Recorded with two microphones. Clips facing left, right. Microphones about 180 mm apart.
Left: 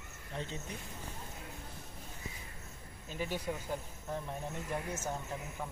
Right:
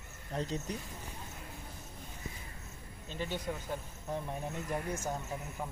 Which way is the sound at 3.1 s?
10° left (ahead or behind).